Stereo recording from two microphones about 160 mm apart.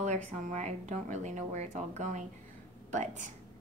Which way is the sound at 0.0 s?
45° right (ahead or behind).